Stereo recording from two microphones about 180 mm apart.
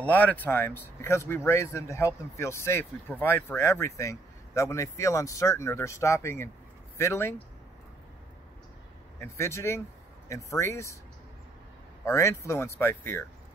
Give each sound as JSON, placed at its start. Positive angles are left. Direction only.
{"t": 0.0, "sound": "speech", "side_deg": 10}
{"t": 9.2, "sound": "speech", "side_deg": 15}
{"t": 12.0, "sound": "speech", "side_deg": 15}